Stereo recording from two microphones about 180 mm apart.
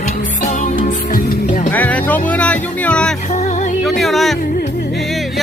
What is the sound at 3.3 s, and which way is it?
Music, 40° left (ahead or behind).